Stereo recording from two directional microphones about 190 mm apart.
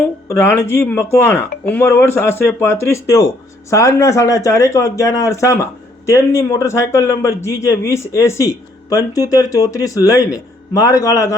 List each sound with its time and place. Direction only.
0.3 s a man's voice: 15° left (ahead or behind)